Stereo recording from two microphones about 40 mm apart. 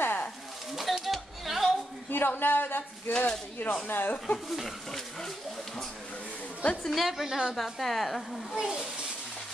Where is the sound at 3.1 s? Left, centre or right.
Left.